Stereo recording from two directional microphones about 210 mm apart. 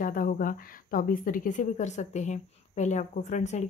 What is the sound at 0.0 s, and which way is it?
A woman's voice, 40° left (ahead or behind).